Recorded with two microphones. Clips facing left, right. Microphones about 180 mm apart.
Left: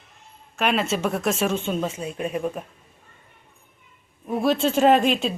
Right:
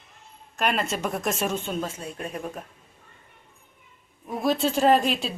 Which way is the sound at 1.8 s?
5° left (ahead or behind).